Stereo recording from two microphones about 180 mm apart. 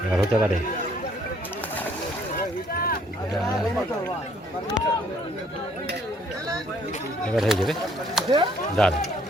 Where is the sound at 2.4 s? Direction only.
55° left (ahead or behind).